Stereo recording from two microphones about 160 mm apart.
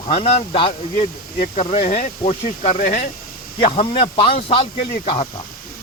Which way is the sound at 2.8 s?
65° left (ahead or behind).